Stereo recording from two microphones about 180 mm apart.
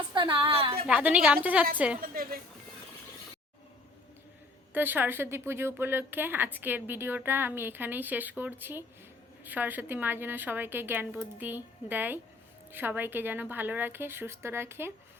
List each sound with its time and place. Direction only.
0.1 s a woman's voice: 25° right (ahead or behind)
0.9 s a woman's voice: 5° right (ahead or behind)
2.0 s a woman's voice: 55° right (ahead or behind)
4.7 s a woman's voice: 10° right (ahead or behind)